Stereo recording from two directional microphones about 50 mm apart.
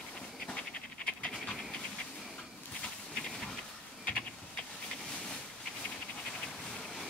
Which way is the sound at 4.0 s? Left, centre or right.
Left.